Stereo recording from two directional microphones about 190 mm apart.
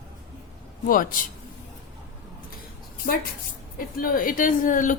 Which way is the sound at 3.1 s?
55° left (ahead or behind).